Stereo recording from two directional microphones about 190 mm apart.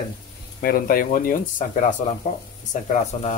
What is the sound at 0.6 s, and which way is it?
Speech, 50° left (ahead or behind).